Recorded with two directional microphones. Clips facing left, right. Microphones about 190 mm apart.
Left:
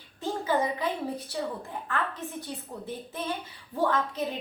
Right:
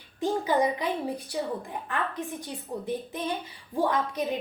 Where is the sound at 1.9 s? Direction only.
15° right (ahead or behind).